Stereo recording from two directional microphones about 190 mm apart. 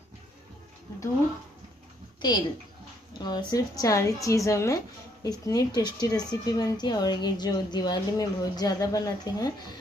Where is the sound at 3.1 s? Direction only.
20° left (ahead or behind).